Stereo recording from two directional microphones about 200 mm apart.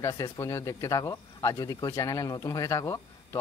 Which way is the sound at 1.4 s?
15° left (ahead or behind).